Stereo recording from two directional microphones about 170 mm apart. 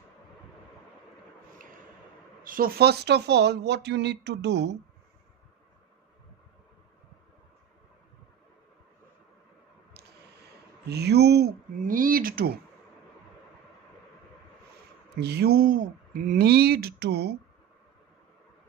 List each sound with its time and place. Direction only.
2.4 s speech: 55° right (ahead or behind); by 4.7 s 85° right
10.9 s speech: 75° right (ahead or behind); by 12.5 s 60° right (ahead or behind)
15.1 s speech: 75° right (ahead or behind)